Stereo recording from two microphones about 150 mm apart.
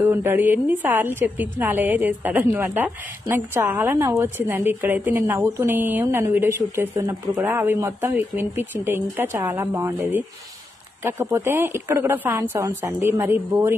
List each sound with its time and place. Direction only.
0.0 s a woman's voice: 15° right (ahead or behind)